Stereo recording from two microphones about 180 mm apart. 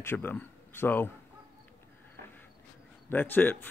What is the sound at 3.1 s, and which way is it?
Speech, 10° left (ahead or behind).